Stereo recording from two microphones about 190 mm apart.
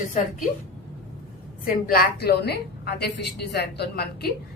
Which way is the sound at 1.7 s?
50° left (ahead or behind).